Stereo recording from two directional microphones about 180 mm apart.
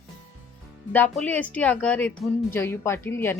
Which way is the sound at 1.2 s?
10° left (ahead or behind).